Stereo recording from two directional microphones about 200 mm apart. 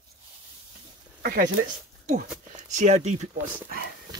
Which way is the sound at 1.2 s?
45° right (ahead or behind).